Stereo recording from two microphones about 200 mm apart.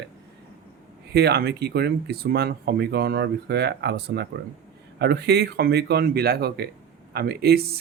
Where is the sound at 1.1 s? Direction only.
55° right (ahead or behind).